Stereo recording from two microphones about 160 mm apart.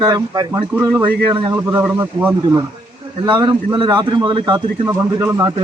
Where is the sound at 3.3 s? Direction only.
30° right (ahead or behind).